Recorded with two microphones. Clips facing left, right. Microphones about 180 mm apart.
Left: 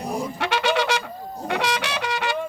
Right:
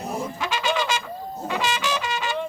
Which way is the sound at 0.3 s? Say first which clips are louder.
Left 4 dB; 65° left (ahead or behind).